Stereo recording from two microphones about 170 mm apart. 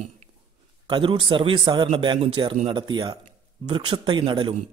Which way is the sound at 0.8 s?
30° right (ahead or behind).